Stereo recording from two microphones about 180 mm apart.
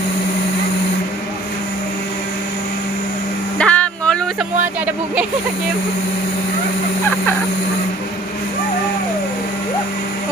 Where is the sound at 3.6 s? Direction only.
5° left (ahead or behind).